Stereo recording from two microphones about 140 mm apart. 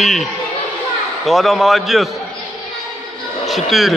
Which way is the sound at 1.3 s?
Centre (ahead or behind).